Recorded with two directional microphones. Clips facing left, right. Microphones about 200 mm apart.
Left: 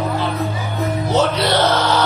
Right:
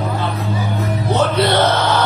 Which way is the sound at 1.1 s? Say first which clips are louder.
Right 2 dB; 55° right (ahead or behind).